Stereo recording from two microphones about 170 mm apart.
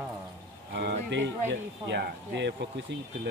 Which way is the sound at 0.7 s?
85° right.